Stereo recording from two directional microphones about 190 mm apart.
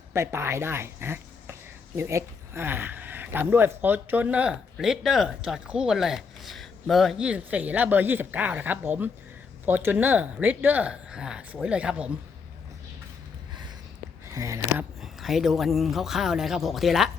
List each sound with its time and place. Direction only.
0.1 s speech: 15° right (ahead or behind)
14.3 s speech: 15° right (ahead or behind)
15.0 s speech: centre (ahead or behind)